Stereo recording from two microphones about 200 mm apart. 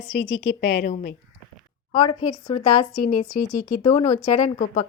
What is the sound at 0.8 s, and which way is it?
Speech, 45° left (ahead or behind).